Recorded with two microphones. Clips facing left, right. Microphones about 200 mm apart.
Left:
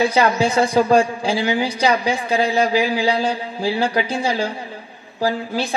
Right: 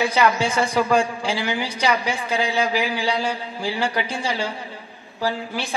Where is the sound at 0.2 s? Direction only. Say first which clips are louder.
Left 1 dB; 35° left (ahead or behind).